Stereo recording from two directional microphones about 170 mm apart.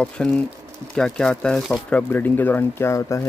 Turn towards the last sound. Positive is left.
turn(degrees=15)  # may be behind; listen again after turning